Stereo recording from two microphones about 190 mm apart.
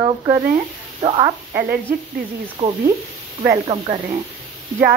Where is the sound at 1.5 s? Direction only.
50° right (ahead or behind).